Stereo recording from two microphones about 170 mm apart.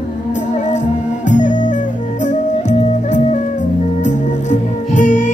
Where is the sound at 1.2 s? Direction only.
45° left (ahead or behind).